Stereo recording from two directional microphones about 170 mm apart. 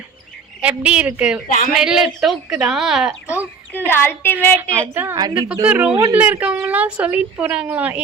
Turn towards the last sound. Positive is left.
turn(degrees=-10)  # may be behind; listen again after turning